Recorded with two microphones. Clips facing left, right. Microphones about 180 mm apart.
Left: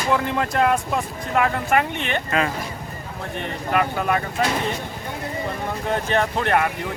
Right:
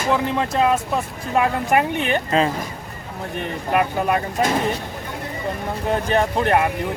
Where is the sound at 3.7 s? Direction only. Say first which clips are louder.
Right 2 dB; 20° right (ahead or behind).